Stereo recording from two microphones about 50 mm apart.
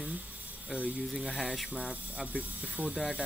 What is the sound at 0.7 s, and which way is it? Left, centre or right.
Speech, right.